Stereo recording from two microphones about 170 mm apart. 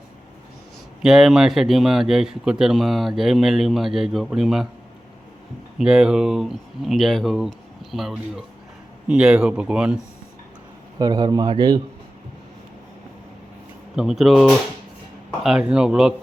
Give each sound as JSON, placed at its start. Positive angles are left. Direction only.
{"t": 1.0, "sound": "a man's voice", "side_deg": 0}
{"t": 5.8, "sound": "a man's voice", "side_deg": -5}
{"t": 10.9, "sound": "a man's voice", "side_deg": -25}
{"t": 13.9, "sound": "a man's voice", "side_deg": -5}